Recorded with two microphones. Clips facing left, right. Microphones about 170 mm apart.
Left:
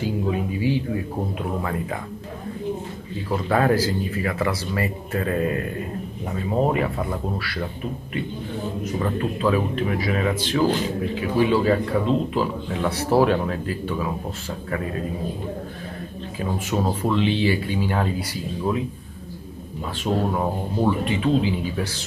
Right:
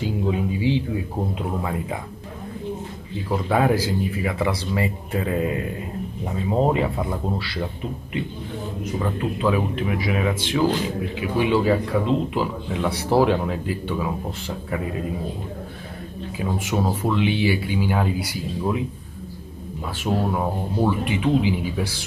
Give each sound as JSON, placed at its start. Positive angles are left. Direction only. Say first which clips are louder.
{"t": 0.0, "sound": "music", "louder": "even", "side_deg": -20}
{"t": 3.3, "sound": "speech", "louder": "even", "side_deg": -10}
{"t": 9.0, "sound": "speech", "louder": "even", "side_deg": -15}
{"t": 16.3, "sound": "speech", "louder": "even", "side_deg": -10}
{"t": 20.0, "sound": "speech", "louder": "even", "side_deg": 0}
{"t": 21.0, "sound": "speech", "louder": "even", "side_deg": -15}